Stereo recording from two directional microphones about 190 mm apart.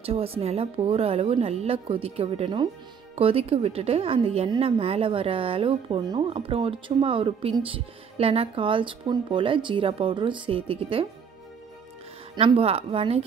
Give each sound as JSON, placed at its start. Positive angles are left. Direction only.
{"t": 0.0, "sound": "a woman's voice", "side_deg": -30}
{"t": 12.4, "sound": "speech", "side_deg": -30}